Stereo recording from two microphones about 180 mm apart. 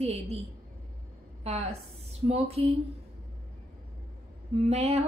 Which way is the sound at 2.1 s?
35° right (ahead or behind).